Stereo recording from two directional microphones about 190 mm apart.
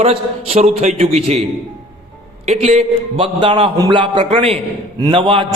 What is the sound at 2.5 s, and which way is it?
A man's voice, 35° right (ahead or behind).